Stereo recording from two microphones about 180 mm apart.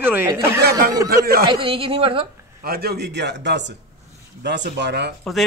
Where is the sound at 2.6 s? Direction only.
60° right (ahead or behind).